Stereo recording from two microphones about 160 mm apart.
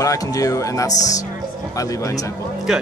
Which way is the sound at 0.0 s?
20° left (ahead or behind).